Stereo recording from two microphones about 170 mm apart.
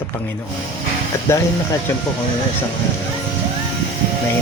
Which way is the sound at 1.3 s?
15° left (ahead or behind).